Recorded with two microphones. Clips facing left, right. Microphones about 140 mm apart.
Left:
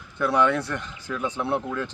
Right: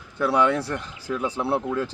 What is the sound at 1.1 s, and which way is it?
Speech, 10° right (ahead or behind).